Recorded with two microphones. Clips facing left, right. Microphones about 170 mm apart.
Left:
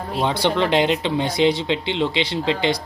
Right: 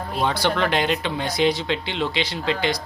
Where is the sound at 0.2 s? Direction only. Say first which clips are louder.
Left 2 dB; 25° left (ahead or behind).